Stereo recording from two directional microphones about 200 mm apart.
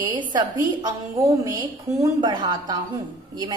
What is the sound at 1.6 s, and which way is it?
A woman's voice, 20° right (ahead or behind).